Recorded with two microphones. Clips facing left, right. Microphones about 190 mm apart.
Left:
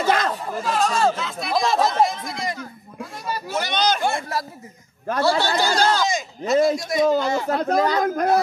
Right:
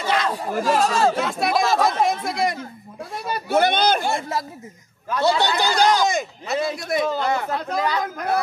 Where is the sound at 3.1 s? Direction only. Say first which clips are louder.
Right 7 dB; 60° right (ahead or behind).